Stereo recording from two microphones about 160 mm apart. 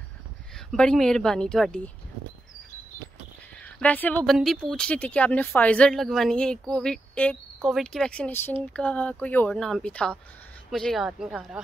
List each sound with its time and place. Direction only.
0.7 s speech: 5° left (ahead or behind)
3.6 s speech: 10° left (ahead or behind)